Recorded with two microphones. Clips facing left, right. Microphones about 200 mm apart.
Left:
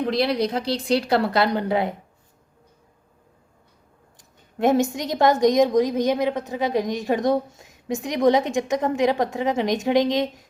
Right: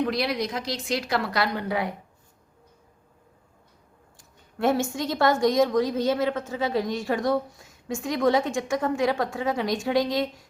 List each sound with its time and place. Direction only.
0.0 s speech: 30° left (ahead or behind)
4.2 s a woman's voice: 20° left (ahead or behind)